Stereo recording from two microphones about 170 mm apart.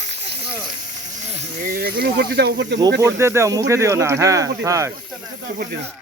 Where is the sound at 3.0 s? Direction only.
15° right (ahead or behind).